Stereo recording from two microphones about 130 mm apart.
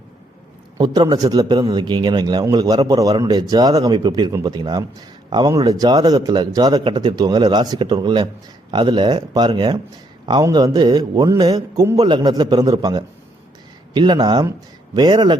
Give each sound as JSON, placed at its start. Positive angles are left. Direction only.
{"t": 0.8, "sound": "a man's voice", "side_deg": -30}